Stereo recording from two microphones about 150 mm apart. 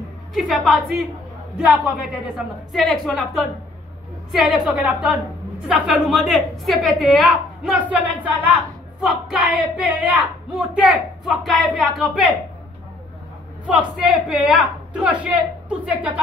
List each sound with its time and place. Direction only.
0.3 s a woman's voice: centre (ahead or behind)
13.7 s a woman's voice: 5° right (ahead or behind)